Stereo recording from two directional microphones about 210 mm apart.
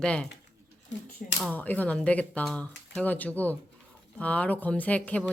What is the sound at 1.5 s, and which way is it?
Speech, 10° left (ahead or behind).